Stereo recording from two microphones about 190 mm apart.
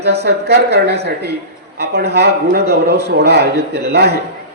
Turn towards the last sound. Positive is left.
turn(degrees=-60)  # may be behind; listen again after turning